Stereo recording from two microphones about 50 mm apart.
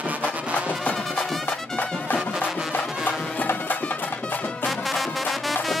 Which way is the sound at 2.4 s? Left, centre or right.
Centre.